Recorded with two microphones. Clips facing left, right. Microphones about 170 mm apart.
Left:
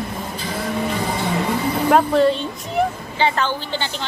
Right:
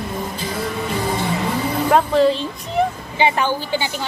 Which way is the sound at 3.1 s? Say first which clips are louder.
Right 3 dB; 15° right (ahead or behind).